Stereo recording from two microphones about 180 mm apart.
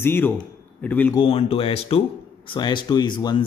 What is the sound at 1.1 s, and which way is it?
Speech, 30° left (ahead or behind).